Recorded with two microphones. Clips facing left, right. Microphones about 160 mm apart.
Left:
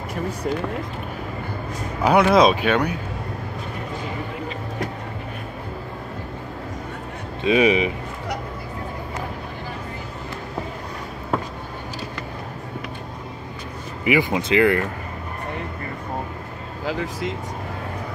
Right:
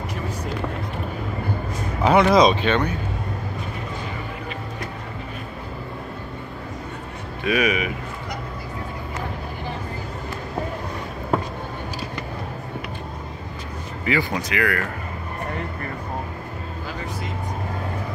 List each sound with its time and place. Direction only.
2.0 s speech: 5° left (ahead or behind)
7.4 s speech: 25° left (ahead or behind)
14.0 s speech: 20° left (ahead or behind)
16.8 s speech: 90° left